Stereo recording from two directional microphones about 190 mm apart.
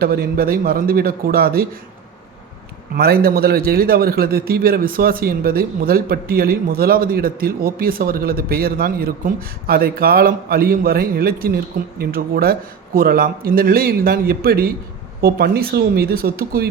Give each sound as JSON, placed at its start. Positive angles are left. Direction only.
{"t": 0.0, "sound": "a man's voice", "side_deg": -55}
{"t": 2.9, "sound": "a man's voice", "side_deg": -55}